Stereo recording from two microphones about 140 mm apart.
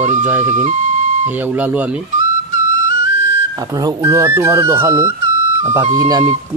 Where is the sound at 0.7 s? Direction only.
60° right (ahead or behind).